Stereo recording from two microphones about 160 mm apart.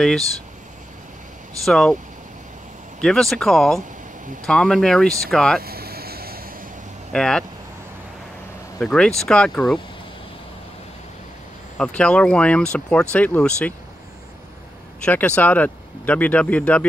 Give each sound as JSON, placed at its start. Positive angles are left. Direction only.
{"t": 1.6, "sound": "speech", "side_deg": 0}
{"t": 3.0, "sound": "speech", "side_deg": 5}
{"t": 5.6, "sound": "vehicle", "side_deg": -75}
{"t": 7.1, "sound": "speech", "side_deg": 5}
{"t": 8.7, "sound": "speech", "side_deg": 5}
{"t": 11.8, "sound": "speech", "side_deg": 5}
{"t": 15.0, "sound": "speech", "side_deg": 10}